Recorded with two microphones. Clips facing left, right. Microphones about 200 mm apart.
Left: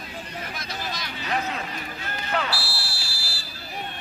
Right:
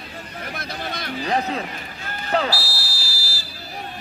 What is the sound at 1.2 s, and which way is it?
A man's voice, 35° right (ahead or behind).